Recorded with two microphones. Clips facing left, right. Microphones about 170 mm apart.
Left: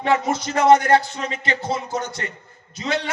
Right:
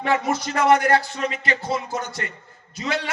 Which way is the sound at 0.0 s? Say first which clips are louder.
Left 2 dB; 20° left (ahead or behind).